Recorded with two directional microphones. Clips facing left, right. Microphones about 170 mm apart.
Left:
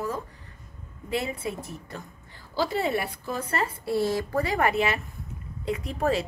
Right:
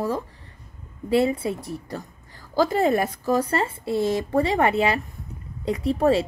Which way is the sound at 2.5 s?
45° right (ahead or behind).